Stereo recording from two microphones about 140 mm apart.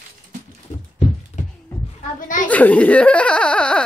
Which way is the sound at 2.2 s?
70° left (ahead or behind).